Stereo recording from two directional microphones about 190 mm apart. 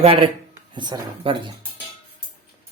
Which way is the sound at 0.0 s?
30° right (ahead or behind).